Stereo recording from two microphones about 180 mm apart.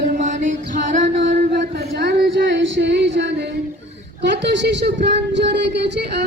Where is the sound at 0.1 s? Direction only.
45° right (ahead or behind).